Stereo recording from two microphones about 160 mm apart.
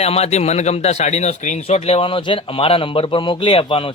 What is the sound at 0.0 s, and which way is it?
Speech, 40° left (ahead or behind).